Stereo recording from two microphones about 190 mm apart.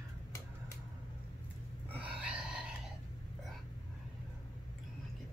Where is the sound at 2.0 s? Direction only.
5° right (ahead or behind).